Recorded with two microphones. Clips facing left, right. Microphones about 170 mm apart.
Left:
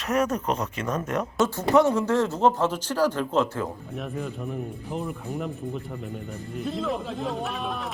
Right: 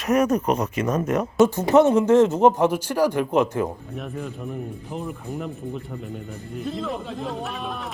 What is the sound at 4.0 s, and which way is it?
Speech, centre (ahead or behind).